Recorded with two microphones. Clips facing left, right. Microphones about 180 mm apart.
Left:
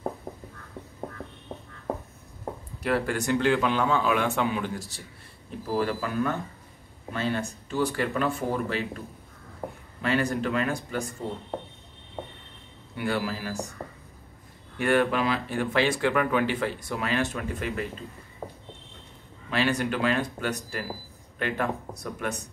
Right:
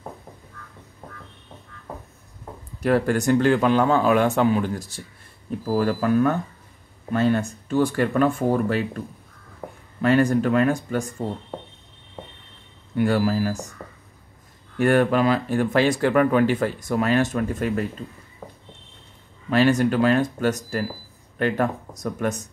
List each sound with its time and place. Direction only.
2.8 s speech: 45° right (ahead or behind)
10.0 s speech: 45° right (ahead or behind)
12.9 s speech: 45° right (ahead or behind)
13.8 s whispering: 30° left (ahead or behind)
14.8 s speech: 45° right (ahead or behind)
18.4 s a sound: 25° left (ahead or behind)
19.5 s speech: 45° right (ahead or behind)